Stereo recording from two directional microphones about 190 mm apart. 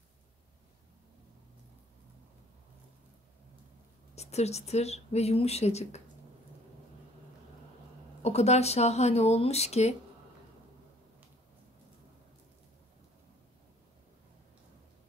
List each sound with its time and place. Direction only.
4.1 s a woman's voice: 35° left (ahead or behind)
8.2 s a woman's voice: 35° left (ahead or behind)